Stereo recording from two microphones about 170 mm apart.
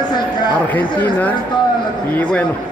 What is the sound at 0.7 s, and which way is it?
Speech, 10° left (ahead or behind).